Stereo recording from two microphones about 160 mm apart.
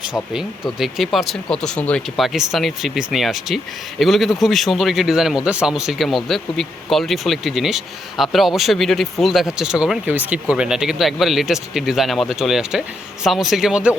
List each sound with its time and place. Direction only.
0.1 s speech: 5° right (ahead or behind)